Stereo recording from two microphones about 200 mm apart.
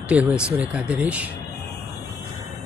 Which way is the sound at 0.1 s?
5° right (ahead or behind).